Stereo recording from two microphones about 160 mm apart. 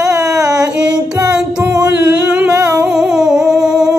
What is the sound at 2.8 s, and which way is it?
Humming, 5° right (ahead or behind).